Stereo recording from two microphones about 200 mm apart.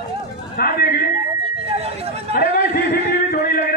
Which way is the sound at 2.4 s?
50° left (ahead or behind).